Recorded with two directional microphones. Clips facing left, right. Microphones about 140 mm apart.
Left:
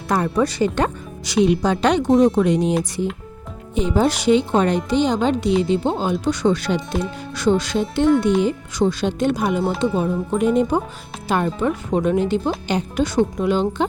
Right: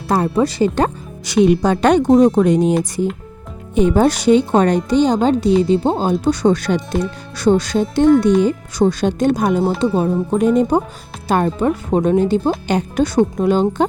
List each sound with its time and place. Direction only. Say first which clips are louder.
0.1 s speech: right 3 dB; 30° right (ahead or behind)
1.5 s a woman's voice: right 5 dB; 50° right (ahead or behind)
3.8 s a woman's voice: right 5 dB; 50° right (ahead or behind)